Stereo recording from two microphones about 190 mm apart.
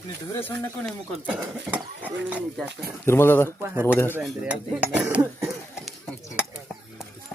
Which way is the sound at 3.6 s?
15° right (ahead or behind).